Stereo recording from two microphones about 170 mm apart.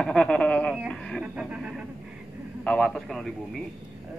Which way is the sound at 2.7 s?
5° left (ahead or behind).